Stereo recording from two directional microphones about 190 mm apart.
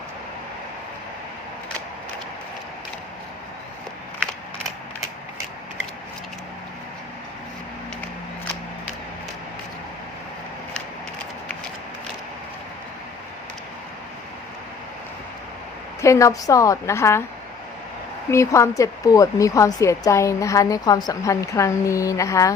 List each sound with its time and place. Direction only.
16.0 s speech: 15° left (ahead or behind)
18.3 s speech: 15° left (ahead or behind)